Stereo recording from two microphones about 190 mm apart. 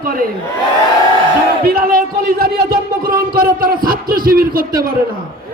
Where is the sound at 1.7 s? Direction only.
50° right (ahead or behind).